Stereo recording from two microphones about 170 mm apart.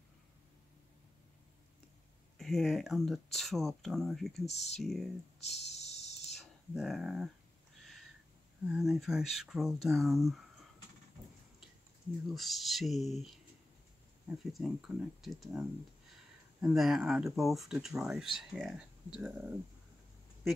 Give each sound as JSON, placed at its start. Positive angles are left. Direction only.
{"t": 2.3, "sound": "speech", "side_deg": 0}
{"t": 4.5, "sound": "speech", "side_deg": 40}
{"t": 4.7, "sound": "speech", "side_deg": 0}
{"t": 5.4, "sound": "a sound", "side_deg": 40}
{"t": 6.3, "sound": "a sound", "side_deg": 0}
{"t": 8.6, "sound": "speech", "side_deg": 0}
{"t": 12.4, "sound": "speech", "side_deg": 0}
{"t": 14.4, "sound": "speech", "side_deg": 0}
{"t": 16.6, "sound": "speech", "side_deg": 0}